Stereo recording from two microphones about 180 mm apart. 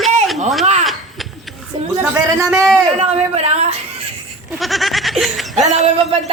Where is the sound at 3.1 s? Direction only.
35° right (ahead or behind).